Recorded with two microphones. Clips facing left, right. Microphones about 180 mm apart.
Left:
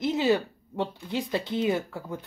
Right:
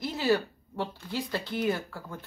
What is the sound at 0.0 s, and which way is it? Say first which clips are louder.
Speech: left 3 dB; 20° left (ahead or behind).